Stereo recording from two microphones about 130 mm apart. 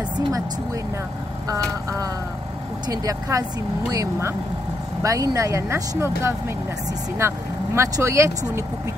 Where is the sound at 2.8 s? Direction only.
30° right (ahead or behind).